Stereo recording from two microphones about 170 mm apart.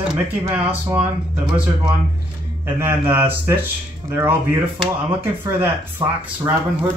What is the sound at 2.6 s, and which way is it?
Speech, 15° right (ahead or behind).